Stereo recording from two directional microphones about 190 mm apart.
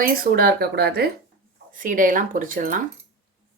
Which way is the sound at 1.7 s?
45° right (ahead or behind).